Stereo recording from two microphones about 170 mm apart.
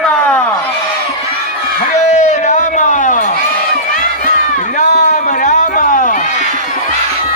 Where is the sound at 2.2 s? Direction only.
45° left (ahead or behind).